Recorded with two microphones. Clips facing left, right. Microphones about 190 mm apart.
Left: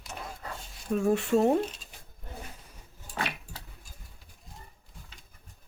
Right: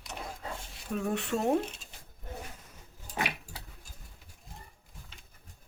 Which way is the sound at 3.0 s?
15° right (ahead or behind).